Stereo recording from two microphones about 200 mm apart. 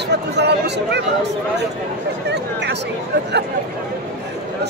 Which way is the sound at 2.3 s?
60° right (ahead or behind).